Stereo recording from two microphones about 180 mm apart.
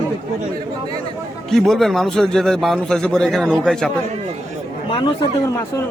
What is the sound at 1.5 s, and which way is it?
A man's voice, centre (ahead or behind).